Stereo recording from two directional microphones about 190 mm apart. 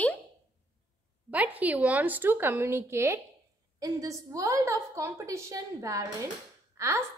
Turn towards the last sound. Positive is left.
turn(degrees=-15)  # may be behind; listen again after turning